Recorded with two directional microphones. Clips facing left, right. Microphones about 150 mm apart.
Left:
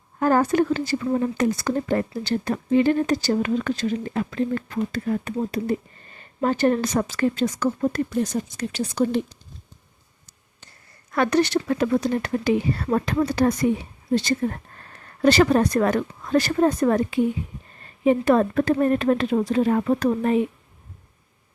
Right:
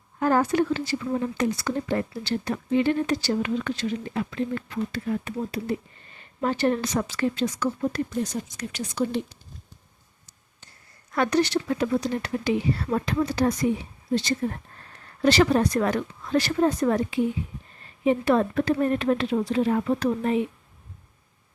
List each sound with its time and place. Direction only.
0.2 s speech: 45° left (ahead or behind)
8.4 s speech: 30° left (ahead or behind)
11.1 s speech: 60° left (ahead or behind)
15.2 s speech: 50° left (ahead or behind)